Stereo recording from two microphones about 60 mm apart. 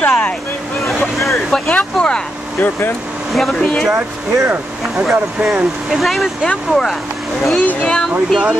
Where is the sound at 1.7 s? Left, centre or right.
Centre.